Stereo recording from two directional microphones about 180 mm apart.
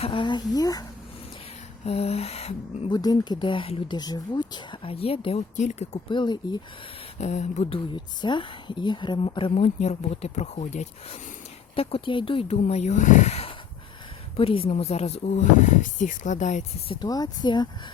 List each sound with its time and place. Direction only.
0.0 s speech: 30° left (ahead or behind)
1.8 s a woman's voice: 35° left (ahead or behind)
2.9 s a woman's voice: 20° left (ahead or behind); by 6.0 s 40° left (ahead or behind)
6.1 s speech: 25° left (ahead or behind)
7.2 s a woman's voice: 40° left (ahead or behind)
17.0 s speech: 20° left (ahead or behind)